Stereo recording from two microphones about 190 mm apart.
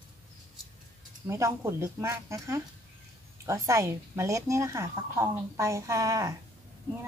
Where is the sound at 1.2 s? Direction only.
15° right (ahead or behind).